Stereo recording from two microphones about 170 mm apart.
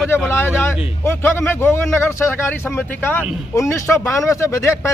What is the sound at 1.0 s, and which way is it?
A man's voice, 15° left (ahead or behind).